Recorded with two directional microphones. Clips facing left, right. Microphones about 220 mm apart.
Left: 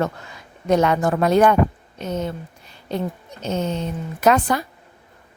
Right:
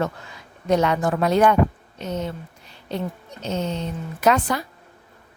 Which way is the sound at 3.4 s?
50° left (ahead or behind).